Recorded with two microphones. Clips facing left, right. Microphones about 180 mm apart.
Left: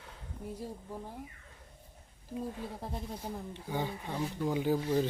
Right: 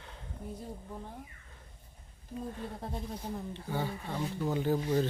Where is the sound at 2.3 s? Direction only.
5° left (ahead or behind).